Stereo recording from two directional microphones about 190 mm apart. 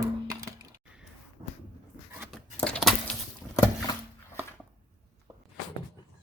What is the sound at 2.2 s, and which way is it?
Tearing, 10° right (ahead or behind).